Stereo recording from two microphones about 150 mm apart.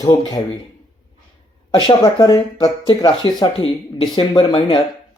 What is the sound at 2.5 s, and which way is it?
Speech, 30° left (ahead or behind).